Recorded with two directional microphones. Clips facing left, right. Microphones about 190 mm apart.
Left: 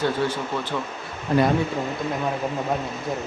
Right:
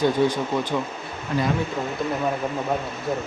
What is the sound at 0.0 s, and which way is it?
Speech, 15° right (ahead or behind).